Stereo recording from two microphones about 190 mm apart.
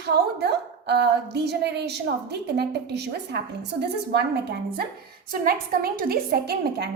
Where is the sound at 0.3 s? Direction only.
60° right (ahead or behind).